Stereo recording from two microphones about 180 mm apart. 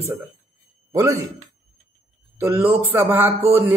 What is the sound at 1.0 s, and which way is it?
Speech, 20° right (ahead or behind).